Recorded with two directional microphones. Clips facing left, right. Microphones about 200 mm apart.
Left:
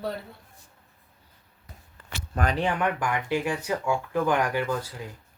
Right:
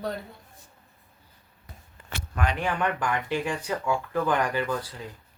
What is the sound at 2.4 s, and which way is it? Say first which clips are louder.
Speech: left 2 dB; 40° left (ahead or behind).